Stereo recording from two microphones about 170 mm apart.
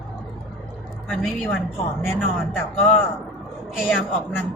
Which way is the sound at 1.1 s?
10° left (ahead or behind).